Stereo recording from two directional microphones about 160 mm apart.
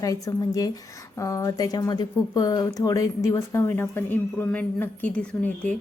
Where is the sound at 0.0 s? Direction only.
20° left (ahead or behind).